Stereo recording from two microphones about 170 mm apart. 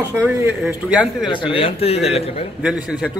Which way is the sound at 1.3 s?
30° left (ahead or behind).